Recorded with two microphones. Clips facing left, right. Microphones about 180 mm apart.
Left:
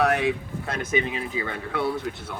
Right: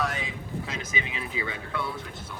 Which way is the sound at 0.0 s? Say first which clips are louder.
Left 9 dB; 65° left (ahead or behind).